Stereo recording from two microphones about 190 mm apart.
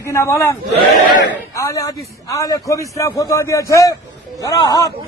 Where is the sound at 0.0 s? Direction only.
15° left (ahead or behind).